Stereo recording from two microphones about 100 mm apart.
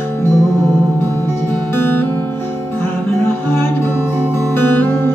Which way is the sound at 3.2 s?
25° left (ahead or behind).